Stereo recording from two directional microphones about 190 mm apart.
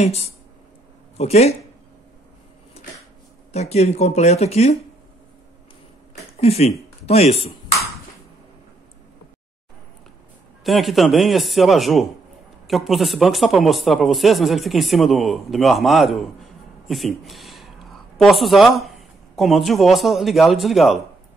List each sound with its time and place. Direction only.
0.0 s speech: 35° left (ahead or behind)
3.5 s speech: 35° left (ahead or behind)
6.4 s speech: 35° left (ahead or behind)
7.1 s chopping: 35° left (ahead or behind)
10.6 s speech: centre (ahead or behind)